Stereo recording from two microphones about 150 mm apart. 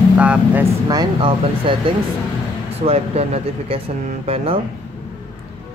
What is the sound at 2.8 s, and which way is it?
Speech, 45° right (ahead or behind).